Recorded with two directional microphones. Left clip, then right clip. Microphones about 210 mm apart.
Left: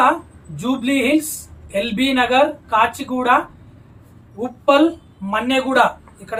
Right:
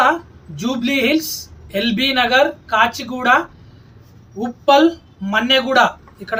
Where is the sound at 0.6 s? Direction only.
15° left (ahead or behind).